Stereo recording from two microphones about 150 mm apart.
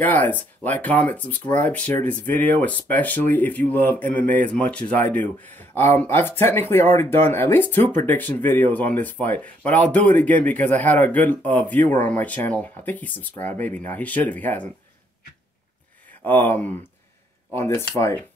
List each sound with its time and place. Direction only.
0.0 s speech: 10° left (ahead or behind)
16.3 s speech: 15° left (ahead or behind)